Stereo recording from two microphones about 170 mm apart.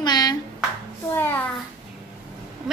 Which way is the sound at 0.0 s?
25° left (ahead or behind).